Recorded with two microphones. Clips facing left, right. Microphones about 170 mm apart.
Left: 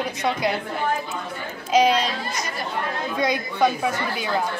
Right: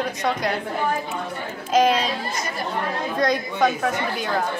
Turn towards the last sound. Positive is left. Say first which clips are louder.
# right 1 dB
turn(degrees=5)  # may be behind; listen again after turning